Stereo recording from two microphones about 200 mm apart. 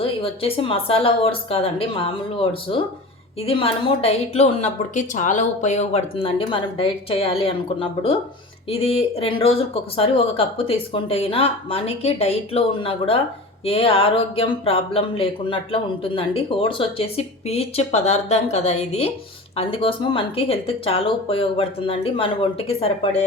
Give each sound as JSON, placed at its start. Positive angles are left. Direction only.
{"t": 0.0, "sound": "speech", "side_deg": 30}